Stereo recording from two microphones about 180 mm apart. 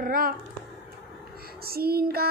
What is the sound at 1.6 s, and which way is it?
Speech, 60° right (ahead or behind).